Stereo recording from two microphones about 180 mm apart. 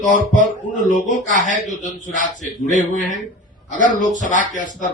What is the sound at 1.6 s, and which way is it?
A man's voice, 45° left (ahead or behind).